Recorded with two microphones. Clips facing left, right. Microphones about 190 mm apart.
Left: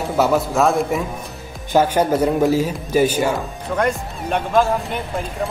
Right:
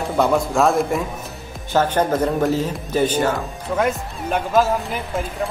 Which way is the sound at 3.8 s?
Centre (ahead or behind).